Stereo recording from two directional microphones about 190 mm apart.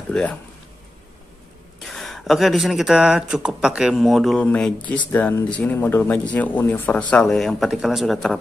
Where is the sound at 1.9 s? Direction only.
Centre (ahead or behind).